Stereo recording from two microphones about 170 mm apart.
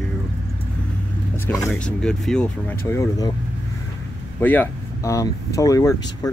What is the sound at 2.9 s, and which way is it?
Speech, 20° left (ahead or behind).